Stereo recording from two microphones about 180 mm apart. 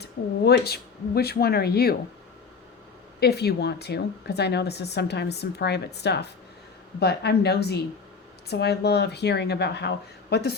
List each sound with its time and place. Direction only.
0.0 s speech: 65° left (ahead or behind)
3.2 s speech: 65° left (ahead or behind)